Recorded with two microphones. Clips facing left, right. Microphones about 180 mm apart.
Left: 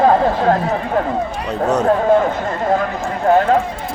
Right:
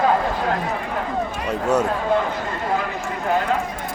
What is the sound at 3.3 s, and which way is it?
Clip-clop, 45° left (ahead or behind).